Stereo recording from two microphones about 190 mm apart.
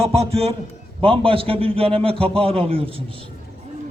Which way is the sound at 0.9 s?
25° right (ahead or behind).